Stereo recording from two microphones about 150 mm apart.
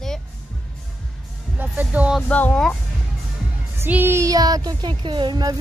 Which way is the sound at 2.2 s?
10° left (ahead or behind).